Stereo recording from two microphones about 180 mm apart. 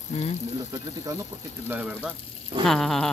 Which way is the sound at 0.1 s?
35° left (ahead or behind).